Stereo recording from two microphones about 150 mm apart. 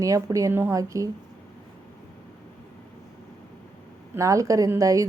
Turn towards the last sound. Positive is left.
turn(degrees=-20)  # may be behind; listen again after turning